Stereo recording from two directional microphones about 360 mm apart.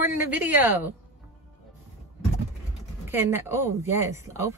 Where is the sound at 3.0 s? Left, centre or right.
Centre.